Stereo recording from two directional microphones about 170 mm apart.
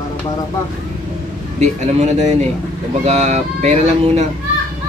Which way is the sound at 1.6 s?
40° right (ahead or behind).